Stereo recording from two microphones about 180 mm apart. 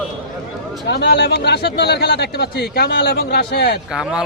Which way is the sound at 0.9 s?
65° left (ahead or behind).